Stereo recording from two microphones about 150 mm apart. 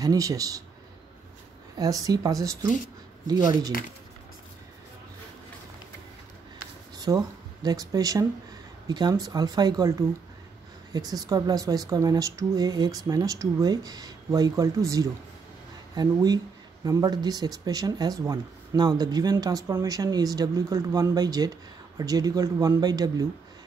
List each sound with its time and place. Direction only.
0.0 s speech: 25° right (ahead or behind)
1.8 s speech: 25° right (ahead or behind)
3.7 s speech: 75° left (ahead or behind)
7.0 s speech: 25° right (ahead or behind)